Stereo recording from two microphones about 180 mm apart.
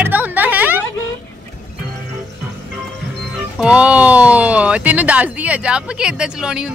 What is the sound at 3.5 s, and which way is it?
Speech, 5° right (ahead or behind).